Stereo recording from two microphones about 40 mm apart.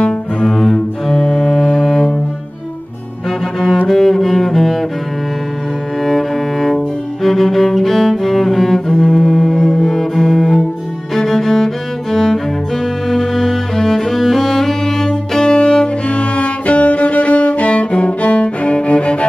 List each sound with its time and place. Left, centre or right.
0.4 s cello: centre
3.3 s cello: centre
6.0 s music: centre
7.2 s cello: centre
11.1 s music: centre; by 19.2 s left